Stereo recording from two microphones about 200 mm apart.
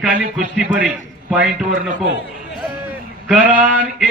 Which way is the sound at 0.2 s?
40° right (ahead or behind).